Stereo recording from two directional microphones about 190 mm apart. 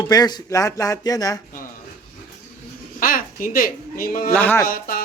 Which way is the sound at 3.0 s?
45° left (ahead or behind).